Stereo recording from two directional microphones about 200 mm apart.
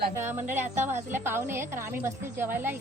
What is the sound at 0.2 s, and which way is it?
A woman's voice, 10° right (ahead or behind).